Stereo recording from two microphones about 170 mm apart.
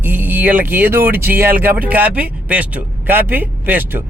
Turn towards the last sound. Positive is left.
turn(degrees=-10)  # may be behind; listen again after turning